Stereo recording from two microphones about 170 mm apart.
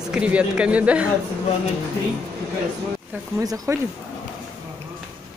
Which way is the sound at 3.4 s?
20° right (ahead or behind).